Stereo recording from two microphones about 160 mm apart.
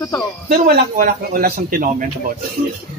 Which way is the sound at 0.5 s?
65° right (ahead or behind).